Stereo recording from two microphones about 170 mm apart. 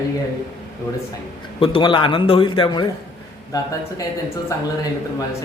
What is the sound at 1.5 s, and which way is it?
A man's voice, 30° left (ahead or behind).